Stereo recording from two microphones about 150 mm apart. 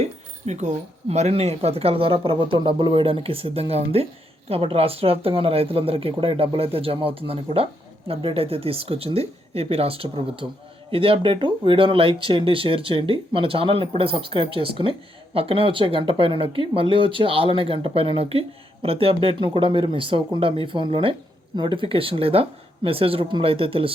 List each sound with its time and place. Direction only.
0.0 s speech: 50° right (ahead or behind)